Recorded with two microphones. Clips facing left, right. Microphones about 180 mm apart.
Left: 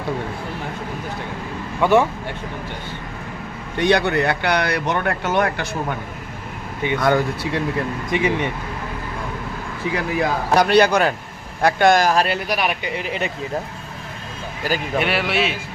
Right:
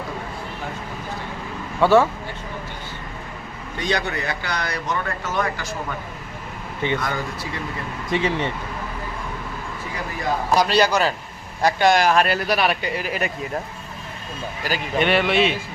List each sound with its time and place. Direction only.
1.8 s speech: 15° left (ahead or behind)
3.8 s speech: 65° left (ahead or behind)
7.0 s speech: 70° left (ahead or behind)
8.1 s speech: 15° left (ahead or behind)
9.9 s speech: 70° left (ahead or behind); by 12.2 s 45° left (ahead or behind)
12.5 s speech: 15° left (ahead or behind)
14.9 s speech: 5° left (ahead or behind)